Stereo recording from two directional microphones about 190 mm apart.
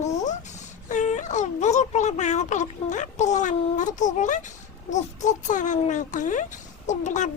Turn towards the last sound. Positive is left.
turn(degrees=40)  # may be behind; listen again after turning